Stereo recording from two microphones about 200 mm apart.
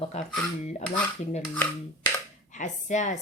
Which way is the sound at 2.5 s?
35° left (ahead or behind).